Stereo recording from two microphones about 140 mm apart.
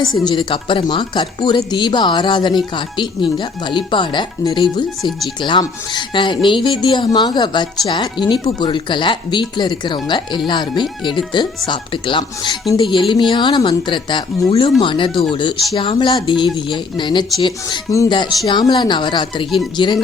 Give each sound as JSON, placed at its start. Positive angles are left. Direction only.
{"t": 0.0, "sound": "speech", "side_deg": 30}